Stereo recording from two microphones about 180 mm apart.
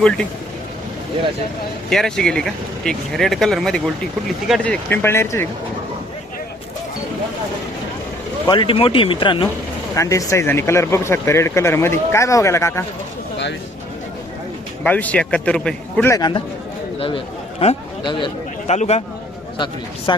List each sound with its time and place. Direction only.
1.9 s speech: 5° left (ahead or behind)
8.4 s speech: 30° left (ahead or behind)
14.8 s speech: 10° left (ahead or behind)
17.0 s speech: 30° left (ahead or behind)
18.7 s a man's voice: 35° left (ahead or behind)
19.5 s speech: 25° left (ahead or behind)